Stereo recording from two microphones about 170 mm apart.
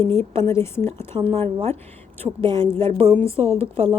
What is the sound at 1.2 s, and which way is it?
A woman's voice, 35° right (ahead or behind).